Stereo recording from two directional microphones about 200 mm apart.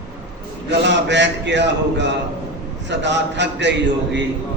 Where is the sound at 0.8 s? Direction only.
60° right (ahead or behind).